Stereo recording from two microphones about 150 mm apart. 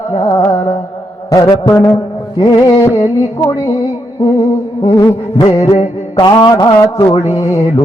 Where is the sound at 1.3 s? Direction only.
25° left (ahead or behind).